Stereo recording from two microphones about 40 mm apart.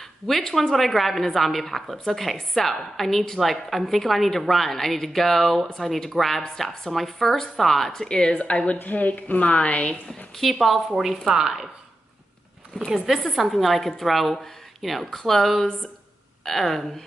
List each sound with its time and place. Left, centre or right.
0.3 s a woman's voice: centre
8.0 s a woman's voice: left
8.7 s a woman's voice: left
10.4 s a woman's voice: centre
11.0 s speech: centre
12.9 s a woman's voice: centre